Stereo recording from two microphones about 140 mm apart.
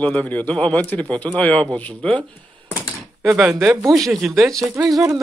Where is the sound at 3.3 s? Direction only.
5° right (ahead or behind).